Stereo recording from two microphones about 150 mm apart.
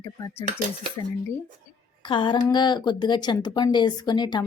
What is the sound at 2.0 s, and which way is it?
Speech, 30° left (ahead or behind).